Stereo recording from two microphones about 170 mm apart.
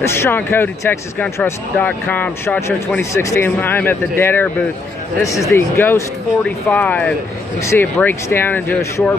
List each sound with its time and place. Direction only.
0.0 s speech: 15° left (ahead or behind)